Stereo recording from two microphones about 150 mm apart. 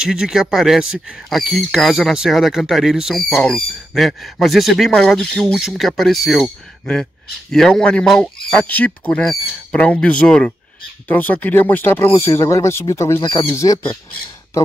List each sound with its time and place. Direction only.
0.0 s speech: 5° right (ahead or behind); by 13.7 s 20° left (ahead or behind)